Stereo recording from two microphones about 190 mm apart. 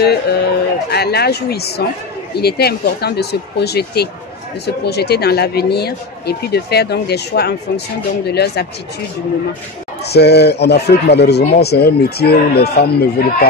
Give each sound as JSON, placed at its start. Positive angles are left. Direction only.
{"t": 0.0, "sound": "speech", "side_deg": 60}
{"t": 10.0, "sound": "speech", "side_deg": 60}